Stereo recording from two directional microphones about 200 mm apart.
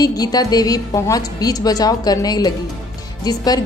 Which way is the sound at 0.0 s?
20° left (ahead or behind).